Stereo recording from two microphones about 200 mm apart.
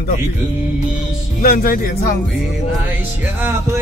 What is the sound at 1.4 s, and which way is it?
Speech, 50° left (ahead or behind).